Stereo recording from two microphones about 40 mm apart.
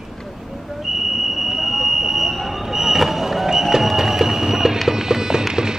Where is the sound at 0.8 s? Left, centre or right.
Centre.